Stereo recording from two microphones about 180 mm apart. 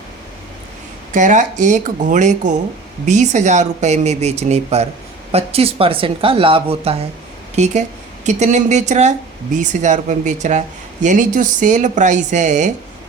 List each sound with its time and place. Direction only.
1.1 s speech: 45° right (ahead or behind)